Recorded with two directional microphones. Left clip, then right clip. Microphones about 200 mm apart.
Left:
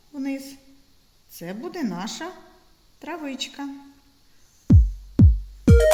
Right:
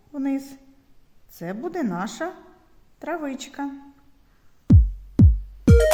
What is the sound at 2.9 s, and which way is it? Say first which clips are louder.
Speech: right 2 dB; 35° right (ahead or behind).